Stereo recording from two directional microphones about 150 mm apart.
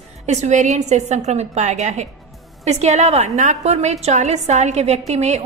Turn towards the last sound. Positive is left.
turn(degrees=-50)  # may be behind; listen again after turning